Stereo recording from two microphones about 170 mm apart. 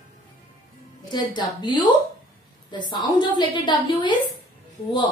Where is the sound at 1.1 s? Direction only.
25° left (ahead or behind).